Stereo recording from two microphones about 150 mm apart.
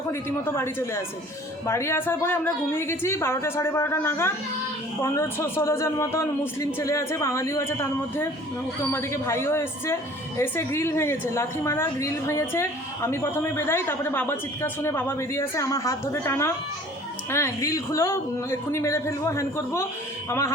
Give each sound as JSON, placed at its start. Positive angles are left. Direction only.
{"t": 0.1, "sound": "a woman's voice", "side_deg": 15}